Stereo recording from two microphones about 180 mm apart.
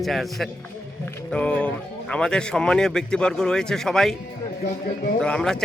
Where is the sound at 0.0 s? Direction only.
Centre (ahead or behind).